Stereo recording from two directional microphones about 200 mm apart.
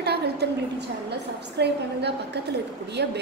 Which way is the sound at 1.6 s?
55° right (ahead or behind).